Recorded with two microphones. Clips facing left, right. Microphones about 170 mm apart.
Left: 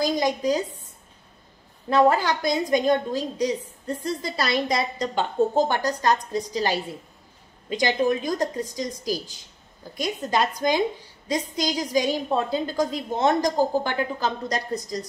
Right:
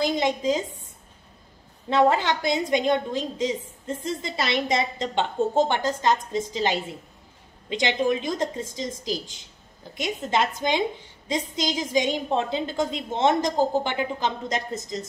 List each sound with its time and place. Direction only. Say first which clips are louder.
0.0 s a woman's voice: left 1 dB; 25° right (ahead or behind)
1.9 s a woman's voice: left 1 dB; 25° right (ahead or behind)
7.7 s a woman's voice: left 1 dB; 20° right (ahead or behind)
9.9 s a woman's voice: left 1 dB; 20° right (ahead or behind)